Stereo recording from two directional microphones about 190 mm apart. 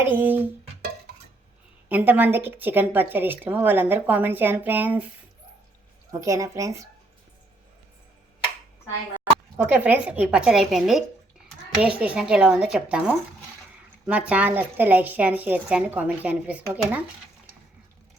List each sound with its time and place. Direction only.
0.1 s a woman's voice: 10° right (ahead or behind)
1.9 s a woman's voice: 10° right (ahead or behind)
6.1 s a woman's voice: 15° right (ahead or behind)
9.6 s a woman's voice: 10° right (ahead or behind)